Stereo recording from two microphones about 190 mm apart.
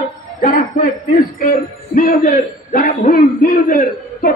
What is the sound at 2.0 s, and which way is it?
A man's voice, 50° left (ahead or behind).